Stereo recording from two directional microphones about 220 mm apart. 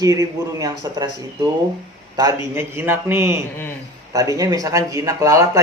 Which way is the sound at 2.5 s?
10° right (ahead or behind).